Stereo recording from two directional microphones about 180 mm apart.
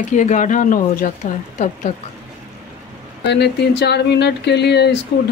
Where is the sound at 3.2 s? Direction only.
65° left (ahead or behind).